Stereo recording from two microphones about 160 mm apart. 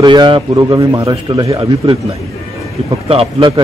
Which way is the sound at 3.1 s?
35° right (ahead or behind).